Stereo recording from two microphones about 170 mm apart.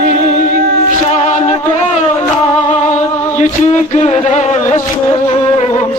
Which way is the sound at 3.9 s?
40° left (ahead or behind).